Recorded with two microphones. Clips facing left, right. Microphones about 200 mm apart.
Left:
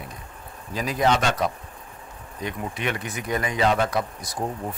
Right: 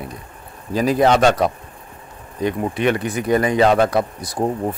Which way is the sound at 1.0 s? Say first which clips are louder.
Right 6 dB; 60° right (ahead or behind).